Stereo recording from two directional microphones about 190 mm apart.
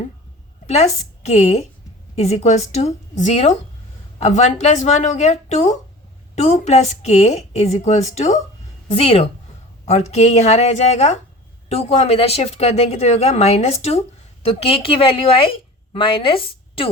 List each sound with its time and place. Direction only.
1.2 s a woman's voice: 35° left (ahead or behind)